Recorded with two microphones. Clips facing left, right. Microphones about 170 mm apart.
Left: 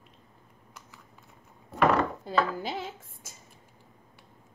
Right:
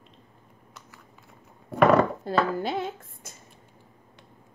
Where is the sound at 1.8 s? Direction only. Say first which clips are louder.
Right 5 dB; 60° right (ahead or behind).